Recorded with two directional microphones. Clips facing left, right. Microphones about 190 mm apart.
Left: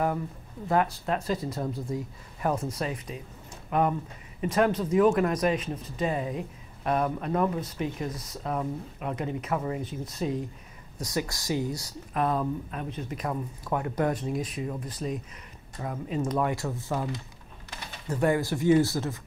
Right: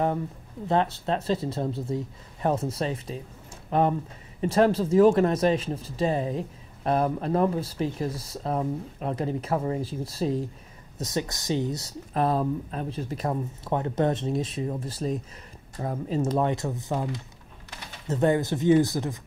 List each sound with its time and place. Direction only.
0.7 s speech: 25° right (ahead or behind)
12.1 s speech: 35° right (ahead or behind); by 19.1 s 15° right (ahead or behind)